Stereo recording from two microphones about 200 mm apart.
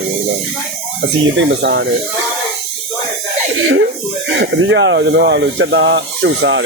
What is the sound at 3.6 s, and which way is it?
Speech, 75° right (ahead or behind).